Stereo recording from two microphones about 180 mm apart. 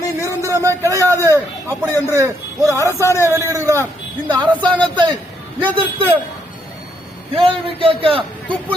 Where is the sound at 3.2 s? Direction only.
15° right (ahead or behind).